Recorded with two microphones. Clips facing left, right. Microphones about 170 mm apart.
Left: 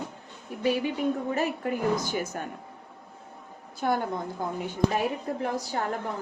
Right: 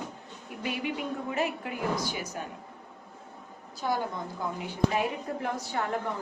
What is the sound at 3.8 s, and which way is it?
Speech, 60° left (ahead or behind).